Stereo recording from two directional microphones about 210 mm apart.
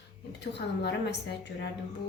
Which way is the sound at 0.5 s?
55° left (ahead or behind).